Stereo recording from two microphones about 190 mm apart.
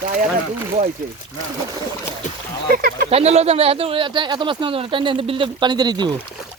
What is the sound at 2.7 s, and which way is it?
Speech, 50° right (ahead or behind).